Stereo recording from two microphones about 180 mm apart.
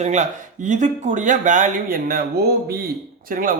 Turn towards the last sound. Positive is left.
turn(degrees=-50)  # may be behind; listen again after turning